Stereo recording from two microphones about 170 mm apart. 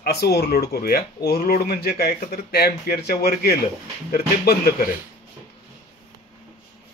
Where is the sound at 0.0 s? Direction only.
70° left (ahead or behind).